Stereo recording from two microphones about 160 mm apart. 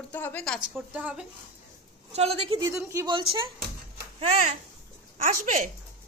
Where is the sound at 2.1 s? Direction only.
40° right (ahead or behind).